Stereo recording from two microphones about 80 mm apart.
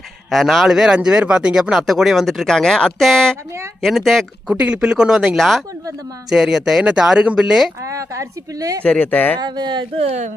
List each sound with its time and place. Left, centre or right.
0.3 s speech: centre
4.4 s speech: centre
7.8 s speech: right
8.8 s speech: centre
9.4 s speech: right